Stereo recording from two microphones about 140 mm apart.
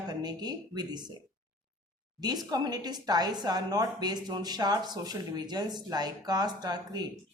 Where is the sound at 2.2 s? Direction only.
30° right (ahead or behind).